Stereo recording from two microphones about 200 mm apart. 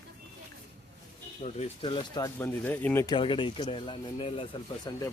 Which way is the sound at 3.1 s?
25° left (ahead or behind).